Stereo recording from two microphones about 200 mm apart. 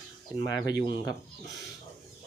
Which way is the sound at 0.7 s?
20° left (ahead or behind).